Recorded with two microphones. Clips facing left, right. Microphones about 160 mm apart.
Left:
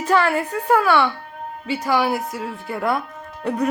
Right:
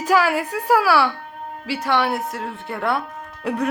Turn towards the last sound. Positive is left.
turn(degrees=0)  # may be behind; listen again after turning